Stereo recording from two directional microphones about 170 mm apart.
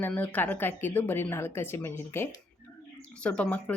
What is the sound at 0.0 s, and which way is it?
Speech, 10° left (ahead or behind).